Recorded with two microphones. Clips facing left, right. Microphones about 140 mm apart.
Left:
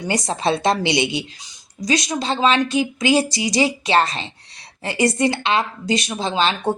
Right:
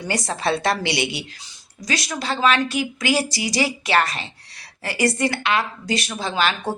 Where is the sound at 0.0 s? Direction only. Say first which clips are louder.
Left 3 dB; 20° left (ahead or behind).